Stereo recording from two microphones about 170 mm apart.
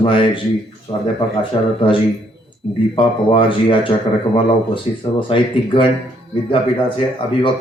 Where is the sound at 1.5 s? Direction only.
35° left (ahead or behind).